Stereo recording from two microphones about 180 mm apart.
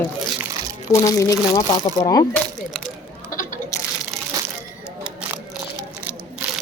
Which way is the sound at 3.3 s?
50° left (ahead or behind).